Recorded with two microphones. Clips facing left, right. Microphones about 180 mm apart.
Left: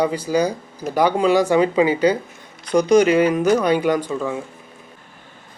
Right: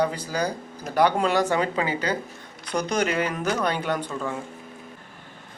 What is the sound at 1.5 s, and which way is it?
Speech, 15° left (ahead or behind).